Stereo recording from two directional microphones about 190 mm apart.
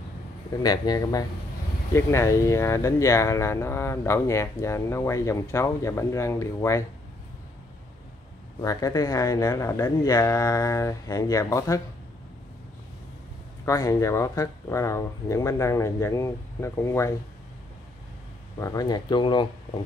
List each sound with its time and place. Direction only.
0.6 s speech: 20° left (ahead or behind)
8.5 s speech: 20° left (ahead or behind)
13.7 s speech: 15° left (ahead or behind)
18.6 s speech: 20° left (ahead or behind)